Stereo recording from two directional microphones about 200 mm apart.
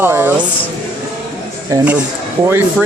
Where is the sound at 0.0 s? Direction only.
10° right (ahead or behind).